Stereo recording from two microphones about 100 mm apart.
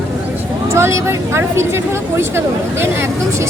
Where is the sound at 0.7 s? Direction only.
25° right (ahead or behind).